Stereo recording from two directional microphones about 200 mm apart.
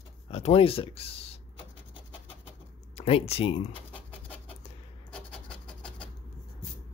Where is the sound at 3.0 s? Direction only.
30° left (ahead or behind).